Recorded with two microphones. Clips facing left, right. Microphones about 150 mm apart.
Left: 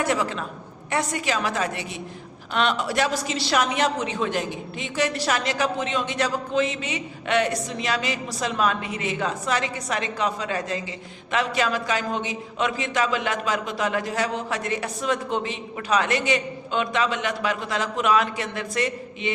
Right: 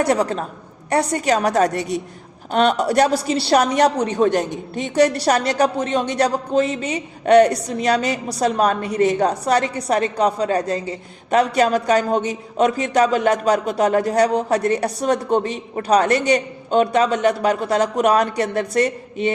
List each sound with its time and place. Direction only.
0.0 s a man's voice: 40° right (ahead or behind)